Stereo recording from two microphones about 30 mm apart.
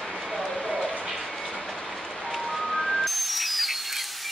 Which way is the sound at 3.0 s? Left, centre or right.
Centre.